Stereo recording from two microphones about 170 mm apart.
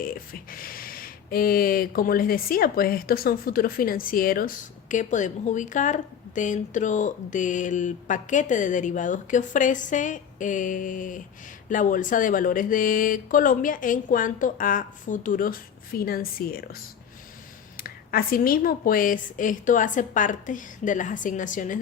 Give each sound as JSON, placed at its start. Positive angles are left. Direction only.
{"t": 0.0, "sound": "speech", "side_deg": 55}
{"t": 17.7, "sound": "speech", "side_deg": 60}